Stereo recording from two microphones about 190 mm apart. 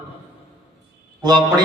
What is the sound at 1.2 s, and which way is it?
Speech, 20° right (ahead or behind).